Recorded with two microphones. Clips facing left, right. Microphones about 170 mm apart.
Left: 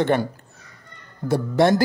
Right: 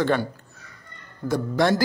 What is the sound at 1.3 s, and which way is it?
Speech, 25° left (ahead or behind).